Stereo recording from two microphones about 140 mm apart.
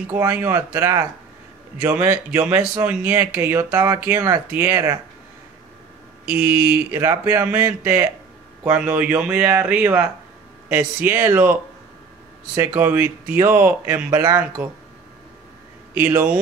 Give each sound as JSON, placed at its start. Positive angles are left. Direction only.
{"t": 0.1, "sound": "speech", "side_deg": -15}
{"t": 6.2, "sound": "speech", "side_deg": -10}
{"t": 12.5, "sound": "speech", "side_deg": -15}